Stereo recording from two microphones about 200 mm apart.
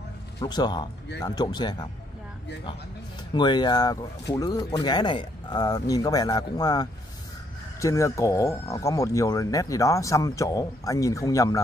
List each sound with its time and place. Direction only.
0.4 s speech: 20° left (ahead or behind)
3.3 s speech: 20° left (ahead or behind)